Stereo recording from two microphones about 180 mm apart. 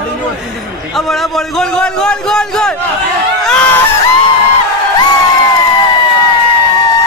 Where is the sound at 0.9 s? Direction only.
Centre (ahead or behind).